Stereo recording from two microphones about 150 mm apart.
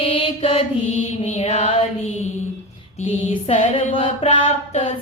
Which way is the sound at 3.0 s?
45° left (ahead or behind).